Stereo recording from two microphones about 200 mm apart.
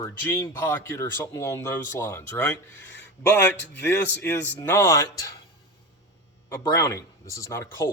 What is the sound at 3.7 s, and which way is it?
A man's voice, 10° left (ahead or behind).